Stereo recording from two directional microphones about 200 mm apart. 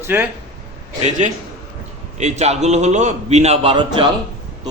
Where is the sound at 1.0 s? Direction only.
40° right (ahead or behind).